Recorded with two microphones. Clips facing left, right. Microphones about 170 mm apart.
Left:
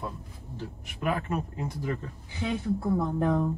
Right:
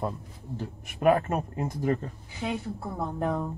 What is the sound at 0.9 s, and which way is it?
Speech, 50° right (ahead or behind).